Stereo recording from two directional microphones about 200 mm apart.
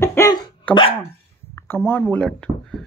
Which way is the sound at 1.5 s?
10° left (ahead or behind).